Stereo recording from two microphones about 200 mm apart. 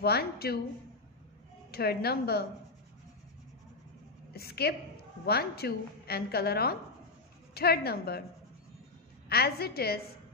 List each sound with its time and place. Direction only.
0.0 s a woman's voice: 50° left (ahead or behind)
1.7 s a woman's voice: 50° left (ahead or behind)
4.3 s a woman's voice: 50° left (ahead or behind)
9.3 s a woman's voice: 50° left (ahead or behind)